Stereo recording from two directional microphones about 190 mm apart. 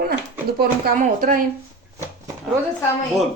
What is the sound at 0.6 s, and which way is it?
Speech, 45° right (ahead or behind).